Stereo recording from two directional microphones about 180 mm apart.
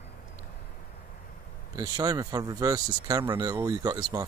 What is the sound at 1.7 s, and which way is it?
Speech, 20° right (ahead or behind).